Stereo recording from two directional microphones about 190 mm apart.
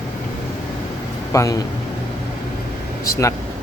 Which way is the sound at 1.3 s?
15° left (ahead or behind).